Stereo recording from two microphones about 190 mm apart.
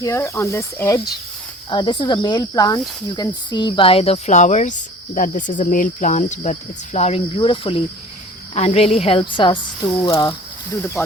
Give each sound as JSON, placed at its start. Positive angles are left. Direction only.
{"t": 0.0, "sound": "speech", "side_deg": 15}